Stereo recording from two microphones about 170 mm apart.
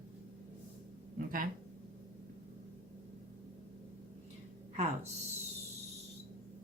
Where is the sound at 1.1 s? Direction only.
55° right (ahead or behind).